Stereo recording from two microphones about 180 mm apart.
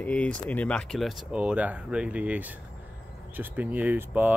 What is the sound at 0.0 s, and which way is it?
Speech, 5° left (ahead or behind).